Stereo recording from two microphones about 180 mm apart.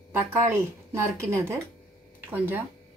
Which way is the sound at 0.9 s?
15° right (ahead or behind).